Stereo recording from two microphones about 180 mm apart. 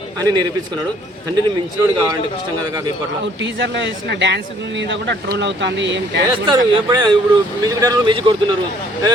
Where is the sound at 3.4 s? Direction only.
85° right.